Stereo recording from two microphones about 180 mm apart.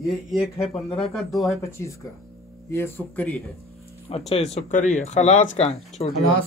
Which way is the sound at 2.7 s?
15° left (ahead or behind).